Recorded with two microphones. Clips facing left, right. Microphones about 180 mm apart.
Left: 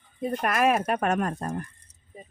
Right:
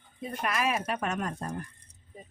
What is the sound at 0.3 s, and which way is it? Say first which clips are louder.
Speech: left 7 dB; 50° left (ahead or behind).